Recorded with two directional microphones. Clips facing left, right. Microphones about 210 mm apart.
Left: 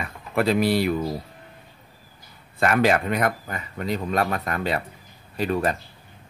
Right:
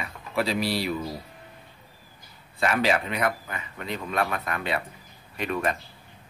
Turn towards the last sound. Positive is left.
turn(degrees=35)  # may be behind; listen again after turning